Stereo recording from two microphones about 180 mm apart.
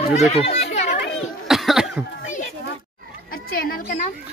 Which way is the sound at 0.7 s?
40° left (ahead or behind).